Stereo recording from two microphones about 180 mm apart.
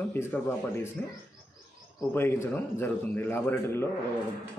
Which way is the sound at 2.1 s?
10° left (ahead or behind).